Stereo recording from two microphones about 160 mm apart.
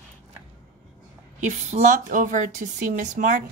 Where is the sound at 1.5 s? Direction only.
45° right (ahead or behind).